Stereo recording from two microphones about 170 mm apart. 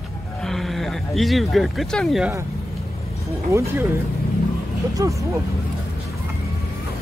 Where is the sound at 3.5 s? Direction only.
15° right (ahead or behind).